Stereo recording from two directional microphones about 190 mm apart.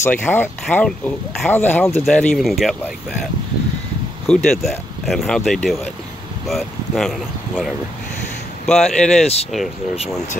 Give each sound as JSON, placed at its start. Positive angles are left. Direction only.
{"t": 0.0, "sound": "speech", "side_deg": 10}
{"t": 4.3, "sound": "speech", "side_deg": 0}
{"t": 9.2, "sound": "speech", "side_deg": 35}